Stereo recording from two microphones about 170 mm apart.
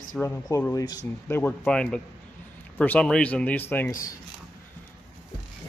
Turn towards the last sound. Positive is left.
turn(degrees=10)  # may be behind; listen again after turning